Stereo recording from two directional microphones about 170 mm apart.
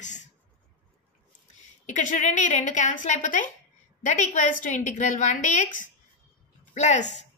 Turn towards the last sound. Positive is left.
turn(degrees=45)  # may be behind; listen again after turning